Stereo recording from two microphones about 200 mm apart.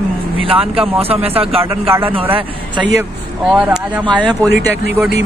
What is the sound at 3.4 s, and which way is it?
Speech, 5° right (ahead or behind).